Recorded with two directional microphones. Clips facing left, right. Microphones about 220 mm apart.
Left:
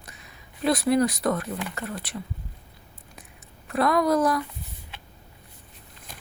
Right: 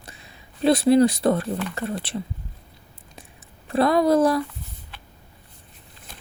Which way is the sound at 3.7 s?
30° right (ahead or behind).